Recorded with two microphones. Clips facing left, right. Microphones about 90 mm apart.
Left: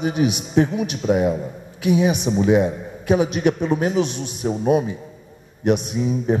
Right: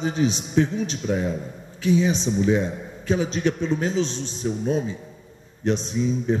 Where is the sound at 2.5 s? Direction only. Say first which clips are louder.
Left 5 dB; 60° left (ahead or behind).